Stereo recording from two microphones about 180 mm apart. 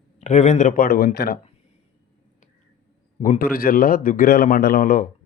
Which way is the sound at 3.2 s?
50° left (ahead or behind).